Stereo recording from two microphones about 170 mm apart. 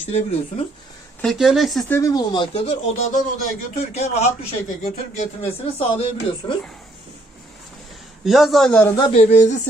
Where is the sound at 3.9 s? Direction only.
40° left (ahead or behind).